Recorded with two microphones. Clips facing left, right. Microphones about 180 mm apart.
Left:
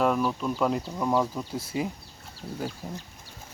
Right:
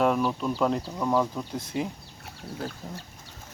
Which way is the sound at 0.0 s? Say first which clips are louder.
Right 1 dB; centre (ahead or behind).